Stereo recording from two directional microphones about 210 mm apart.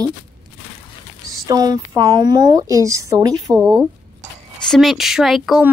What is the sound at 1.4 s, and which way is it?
Speech, 15° right (ahead or behind).